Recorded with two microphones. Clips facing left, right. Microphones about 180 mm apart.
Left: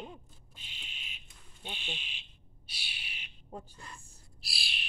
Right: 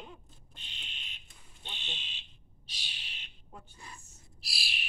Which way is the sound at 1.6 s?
10° left (ahead or behind).